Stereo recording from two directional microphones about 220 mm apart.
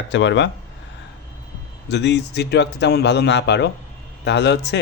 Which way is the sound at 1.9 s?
50° left (ahead or behind).